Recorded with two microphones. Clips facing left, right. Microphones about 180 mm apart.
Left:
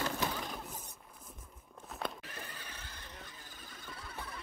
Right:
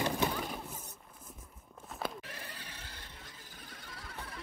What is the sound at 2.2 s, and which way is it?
Neigh, 80° right.